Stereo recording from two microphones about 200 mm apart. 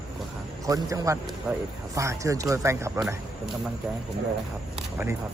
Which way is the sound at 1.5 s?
5° right (ahead or behind).